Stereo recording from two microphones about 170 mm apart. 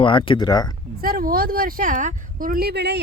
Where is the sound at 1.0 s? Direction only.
55° right (ahead or behind).